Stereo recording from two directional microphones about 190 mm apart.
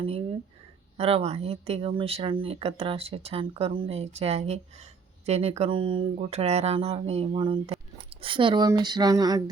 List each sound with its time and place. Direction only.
0.0 s speech: 30° right (ahead or behind)